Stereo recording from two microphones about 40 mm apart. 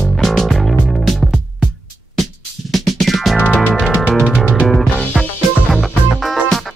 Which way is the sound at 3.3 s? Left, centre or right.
Left.